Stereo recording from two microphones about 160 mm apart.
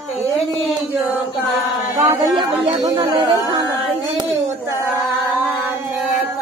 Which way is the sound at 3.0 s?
20° right (ahead or behind).